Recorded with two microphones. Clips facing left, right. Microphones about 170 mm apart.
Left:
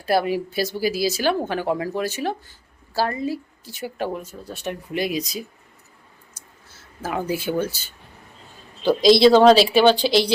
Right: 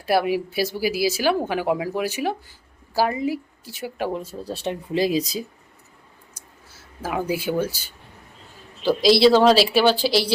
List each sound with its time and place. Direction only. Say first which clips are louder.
0.0 s speech: even; 5° right (ahead or behind)
4.1 s speech: right 3 dB; 30° right (ahead or behind)
6.3 s a sound: right 1 dB; 10° right (ahead or behind)
8.8 s speech: left 2 dB; 5° right (ahead or behind)